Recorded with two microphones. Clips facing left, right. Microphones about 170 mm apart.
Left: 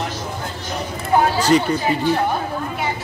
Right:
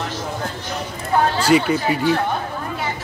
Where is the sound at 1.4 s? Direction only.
10° right (ahead or behind).